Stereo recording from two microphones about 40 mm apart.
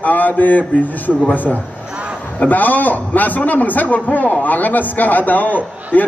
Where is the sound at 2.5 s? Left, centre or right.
Left.